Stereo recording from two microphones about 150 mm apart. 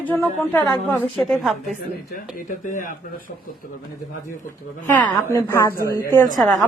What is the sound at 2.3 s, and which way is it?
Speech, 60° left (ahead or behind).